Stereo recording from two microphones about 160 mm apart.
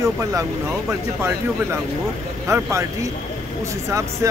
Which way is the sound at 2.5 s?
15° right (ahead or behind).